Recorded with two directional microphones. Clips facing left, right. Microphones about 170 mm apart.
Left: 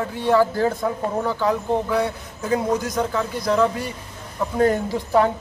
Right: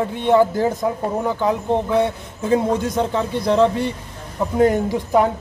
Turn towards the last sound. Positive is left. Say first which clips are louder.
# right 2 dB
turn(degrees=-15)  # may be behind; listen again after turning